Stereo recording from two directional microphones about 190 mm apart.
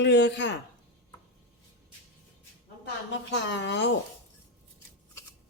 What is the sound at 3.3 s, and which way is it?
Speech, 65° left (ahead or behind).